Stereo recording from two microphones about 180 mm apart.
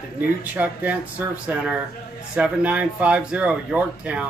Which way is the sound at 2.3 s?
5° right (ahead or behind).